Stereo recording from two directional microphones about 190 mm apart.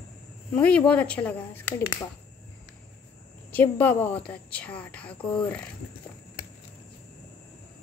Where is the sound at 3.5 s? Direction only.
10° left (ahead or behind).